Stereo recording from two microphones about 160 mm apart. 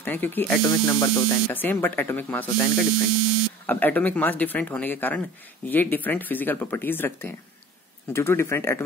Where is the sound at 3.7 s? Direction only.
10° left (ahead or behind).